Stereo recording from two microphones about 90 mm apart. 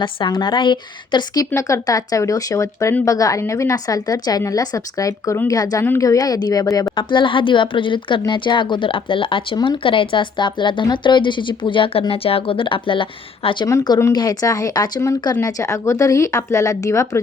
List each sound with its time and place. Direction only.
0.0 s a woman's voice: 60° left (ahead or behind)
1.5 s a woman's voice: 35° left (ahead or behind)
6.9 s speech: 65° left (ahead or behind)
14.1 s speech: 45° left (ahead or behind)
15.4 s a woman's voice: 40° left (ahead or behind)